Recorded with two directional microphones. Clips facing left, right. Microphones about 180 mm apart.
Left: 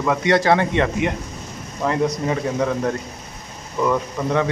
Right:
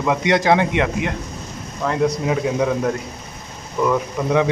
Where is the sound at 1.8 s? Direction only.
Centre (ahead or behind).